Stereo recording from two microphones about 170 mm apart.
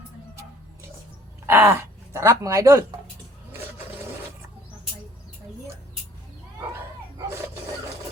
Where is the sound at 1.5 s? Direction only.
15° right (ahead or behind).